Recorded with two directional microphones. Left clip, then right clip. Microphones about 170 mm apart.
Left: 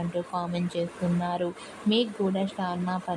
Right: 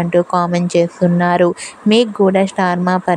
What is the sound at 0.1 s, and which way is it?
Speech, 55° right (ahead or behind).